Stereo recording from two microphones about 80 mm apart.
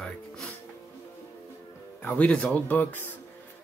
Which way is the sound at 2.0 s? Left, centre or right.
Centre.